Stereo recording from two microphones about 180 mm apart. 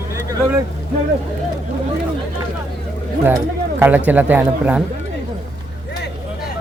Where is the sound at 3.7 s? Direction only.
10° right (ahead or behind).